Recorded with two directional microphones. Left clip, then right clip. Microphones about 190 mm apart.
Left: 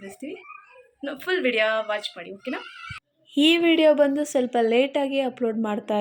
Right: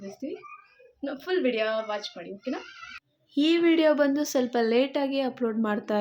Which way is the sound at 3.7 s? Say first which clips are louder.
Left 4 dB; 5° left (ahead or behind).